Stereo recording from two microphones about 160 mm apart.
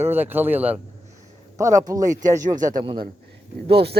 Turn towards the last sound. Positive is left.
turn(degrees=-90)